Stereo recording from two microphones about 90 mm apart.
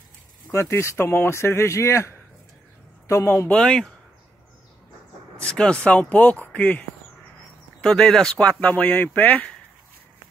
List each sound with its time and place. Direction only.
0.5 s a man's voice: 30° left (ahead or behind)
3.5 s speech: 10° left (ahead or behind)
5.4 s speech: 10° left (ahead or behind)